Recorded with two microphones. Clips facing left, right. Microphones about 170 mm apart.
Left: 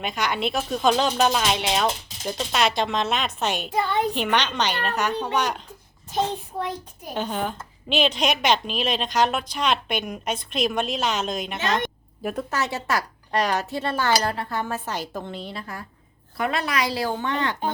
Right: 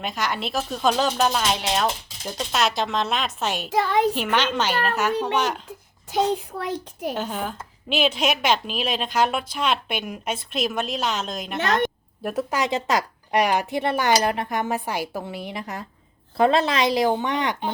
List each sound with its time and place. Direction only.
0.0 s a woman's voice: centre (ahead or behind)
3.7 s a child's voice: 90° right
4.1 s a woman's voice: 5° right (ahead or behind)
6.6 s a child's voice: 80° right
7.2 s a woman's voice: 5° right (ahead or behind)
12.5 s speech: 15° right (ahead or behind)